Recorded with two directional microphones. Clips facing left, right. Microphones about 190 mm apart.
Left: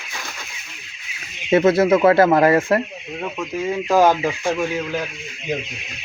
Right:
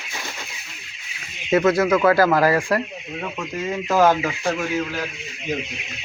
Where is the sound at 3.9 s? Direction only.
15° left (ahead or behind).